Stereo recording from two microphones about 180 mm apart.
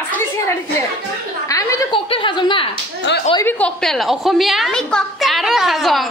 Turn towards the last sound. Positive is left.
turn(degrees=0)  # may be behind; listen again after turning